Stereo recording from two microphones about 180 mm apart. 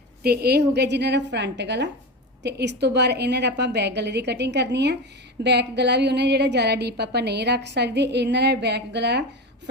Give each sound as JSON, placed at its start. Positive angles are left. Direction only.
{"t": 0.2, "sound": "a woman's voice", "side_deg": -60}